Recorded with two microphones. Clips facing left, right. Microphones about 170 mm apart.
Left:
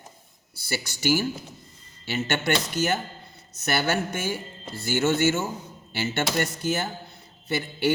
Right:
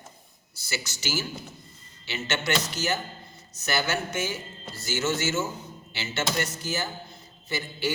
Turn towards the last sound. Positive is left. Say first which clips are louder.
# left 5 dB
turn(degrees=60)  # may be behind; listen again after turning